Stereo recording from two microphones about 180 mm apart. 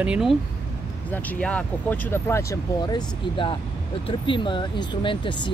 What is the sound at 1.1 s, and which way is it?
Speech, 5° left (ahead or behind).